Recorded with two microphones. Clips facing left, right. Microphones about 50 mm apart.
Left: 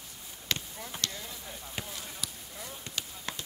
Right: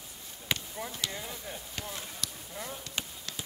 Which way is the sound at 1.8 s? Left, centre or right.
Centre.